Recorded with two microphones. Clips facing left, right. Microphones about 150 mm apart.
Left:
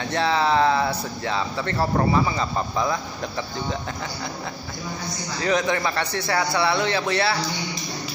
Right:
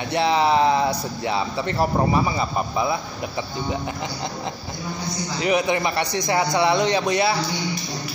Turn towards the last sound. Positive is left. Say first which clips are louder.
# right 3 dB
turn(degrees=-15)  # may be behind; listen again after turning